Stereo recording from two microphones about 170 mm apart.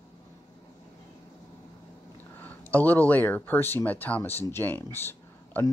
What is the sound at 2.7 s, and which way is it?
Speech, 10° left (ahead or behind).